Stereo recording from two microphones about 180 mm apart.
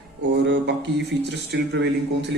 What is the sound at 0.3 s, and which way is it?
Speech, 70° right (ahead or behind).